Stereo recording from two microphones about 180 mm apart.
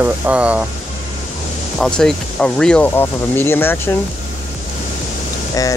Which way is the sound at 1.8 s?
5° left (ahead or behind).